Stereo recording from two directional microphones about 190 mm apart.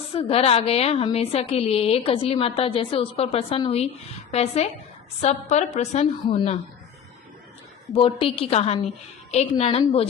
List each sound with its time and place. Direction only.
0.1 s a woman's voice: 30° left (ahead or behind)
7.9 s a woman's voice: 30° left (ahead or behind)